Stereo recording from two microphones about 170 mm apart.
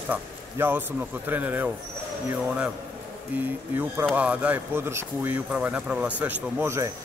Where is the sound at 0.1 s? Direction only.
10° right (ahead or behind).